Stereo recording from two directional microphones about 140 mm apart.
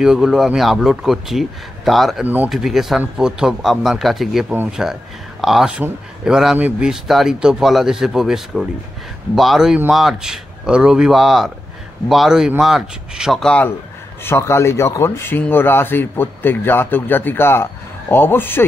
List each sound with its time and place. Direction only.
0.0 s speech: 5° right (ahead or behind)
2.2 s speech: 10° right (ahead or behind)
2.5 s speech: centre (ahead or behind)
14.2 s speech: 20° left (ahead or behind)